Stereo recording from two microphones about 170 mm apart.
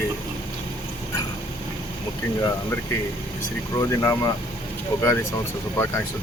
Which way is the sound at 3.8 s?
20° left (ahead or behind).